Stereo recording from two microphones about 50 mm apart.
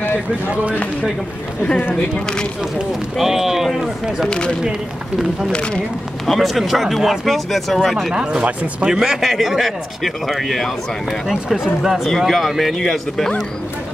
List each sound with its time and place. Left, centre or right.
0.5 s speech: right
3.2 s speech: centre
4.3 s speech: centre
6.3 s speech: centre
8.1 s speech: centre
11.2 s speech: centre